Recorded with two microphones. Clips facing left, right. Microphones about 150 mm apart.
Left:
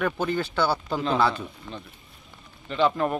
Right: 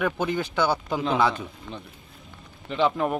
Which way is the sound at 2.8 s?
5° right (ahead or behind).